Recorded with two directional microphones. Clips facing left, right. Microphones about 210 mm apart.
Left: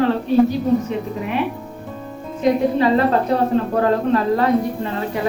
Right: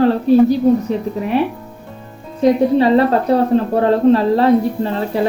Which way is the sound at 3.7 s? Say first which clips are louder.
Right 6 dB; 30° right (ahead or behind).